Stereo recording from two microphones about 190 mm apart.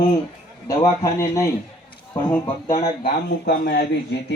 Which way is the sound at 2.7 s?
30° left (ahead or behind).